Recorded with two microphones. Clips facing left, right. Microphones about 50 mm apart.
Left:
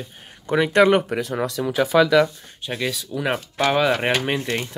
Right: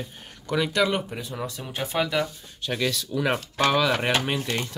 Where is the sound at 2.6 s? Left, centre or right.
Centre.